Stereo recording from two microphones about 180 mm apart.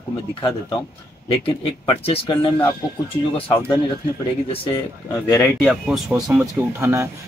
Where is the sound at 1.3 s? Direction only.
30° left (ahead or behind).